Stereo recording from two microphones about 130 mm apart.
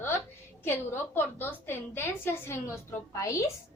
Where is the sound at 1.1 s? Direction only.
15° left (ahead or behind).